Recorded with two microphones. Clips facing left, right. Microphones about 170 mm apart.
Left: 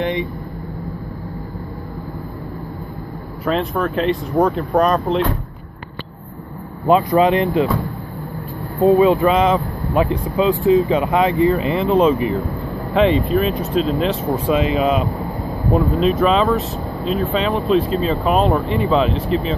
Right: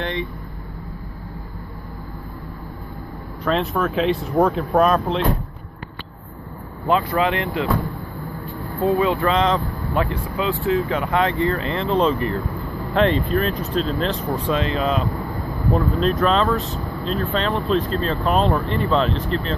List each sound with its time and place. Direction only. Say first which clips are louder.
0.0 s vehicle: left 5 dB; 15° left (ahead or behind)
3.4 s speech: left 1 dB; centre (ahead or behind)
6.9 s speech: left 6 dB; 20° left (ahead or behind)
8.8 s speech: left 6 dB; 20° left (ahead or behind)
16.0 s speech: left 3 dB; 5° left (ahead or behind)